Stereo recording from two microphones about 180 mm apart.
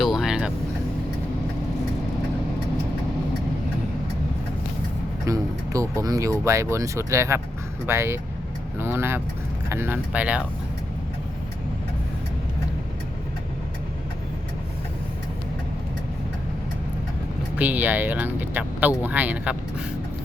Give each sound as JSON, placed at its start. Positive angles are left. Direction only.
{"t": 0.0, "sound": "vehicle", "side_deg": 0}
{"t": 5.2, "sound": "a sound", "side_deg": -15}
{"t": 7.9, "sound": "speech", "side_deg": -15}
{"t": 8.8, "sound": "vehicle", "side_deg": -15}
{"t": 9.6, "sound": "speech", "side_deg": -15}
{"t": 17.6, "sound": "speech", "side_deg": -10}